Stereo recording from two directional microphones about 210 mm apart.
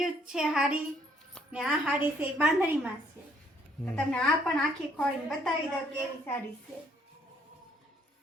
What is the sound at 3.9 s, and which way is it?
A woman's voice, centre (ahead or behind).